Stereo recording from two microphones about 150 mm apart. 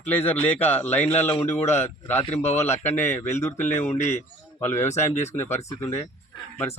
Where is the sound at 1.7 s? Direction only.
15° left (ahead or behind).